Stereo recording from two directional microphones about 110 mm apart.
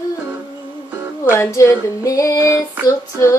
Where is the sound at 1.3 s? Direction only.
25° left (ahead or behind).